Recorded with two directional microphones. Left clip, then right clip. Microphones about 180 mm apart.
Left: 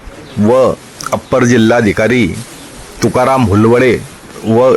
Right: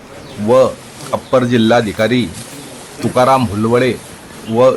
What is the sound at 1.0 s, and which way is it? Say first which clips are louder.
Speech: left 3 dB; 25° left (ahead or behind).